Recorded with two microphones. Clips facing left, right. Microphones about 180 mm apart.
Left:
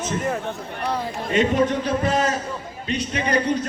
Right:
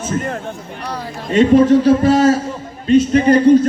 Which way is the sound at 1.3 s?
35° right (ahead or behind).